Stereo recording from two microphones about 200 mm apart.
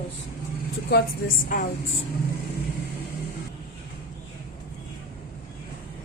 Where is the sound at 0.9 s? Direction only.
45° left (ahead or behind).